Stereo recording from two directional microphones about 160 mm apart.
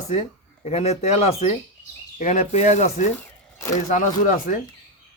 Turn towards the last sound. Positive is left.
turn(degrees=55)  # may be behind; listen again after turning